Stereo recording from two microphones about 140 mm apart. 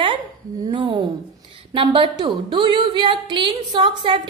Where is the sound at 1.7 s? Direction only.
40° right (ahead or behind).